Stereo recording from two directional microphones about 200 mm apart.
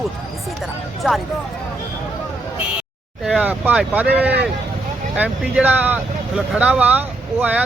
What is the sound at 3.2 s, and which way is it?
Speech, 5° right (ahead or behind).